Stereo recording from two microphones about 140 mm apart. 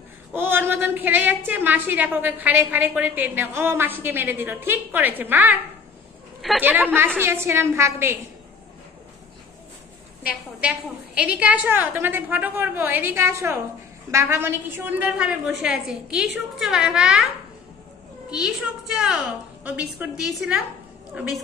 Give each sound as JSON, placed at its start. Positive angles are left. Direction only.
{"t": 0.3, "sound": "a woman's voice", "side_deg": -15}
{"t": 6.6, "sound": "a woman's voice", "side_deg": -10}
{"t": 10.6, "sound": "a woman's voice", "side_deg": -10}
{"t": 18.3, "sound": "a woman's voice", "side_deg": -5}